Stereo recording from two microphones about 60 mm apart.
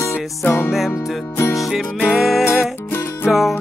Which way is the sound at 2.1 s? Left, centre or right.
Centre.